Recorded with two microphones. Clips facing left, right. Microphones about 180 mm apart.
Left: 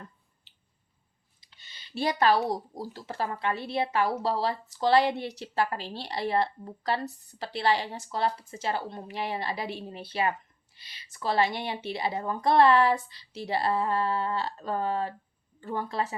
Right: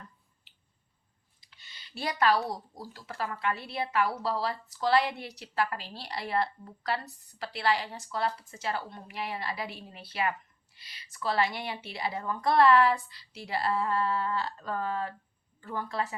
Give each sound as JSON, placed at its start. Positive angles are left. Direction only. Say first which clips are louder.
{"t": 1.5, "sound": "speech", "louder": "left 2 dB", "side_deg": 25}